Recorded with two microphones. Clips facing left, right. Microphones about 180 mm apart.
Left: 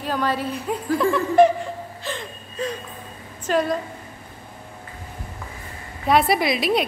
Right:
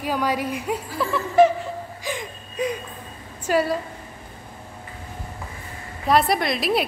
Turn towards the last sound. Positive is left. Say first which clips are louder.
# left 2 dB
turn(degrees=0)  # may be behind; listen again after turning